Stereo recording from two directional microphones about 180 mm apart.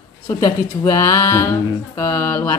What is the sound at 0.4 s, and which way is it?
Speech, 15° left (ahead or behind).